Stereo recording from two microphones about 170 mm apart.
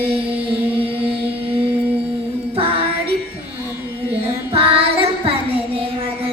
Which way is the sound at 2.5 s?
35° right (ahead or behind).